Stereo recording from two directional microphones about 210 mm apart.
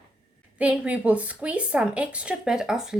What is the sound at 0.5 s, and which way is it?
A woman's voice, 5° right (ahead or behind).